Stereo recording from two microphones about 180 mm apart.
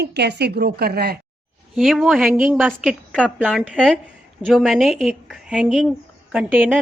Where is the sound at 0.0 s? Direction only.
70° right (ahead or behind).